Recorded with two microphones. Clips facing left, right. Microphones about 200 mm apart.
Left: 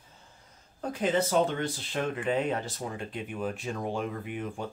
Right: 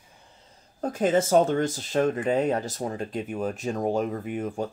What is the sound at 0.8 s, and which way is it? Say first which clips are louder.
Speech: right 5 dB; 45° right (ahead or behind).